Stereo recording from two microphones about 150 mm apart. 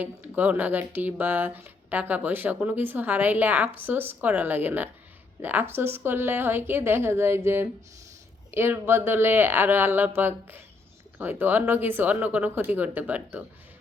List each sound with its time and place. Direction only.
0.0 s speech: 10° right (ahead or behind)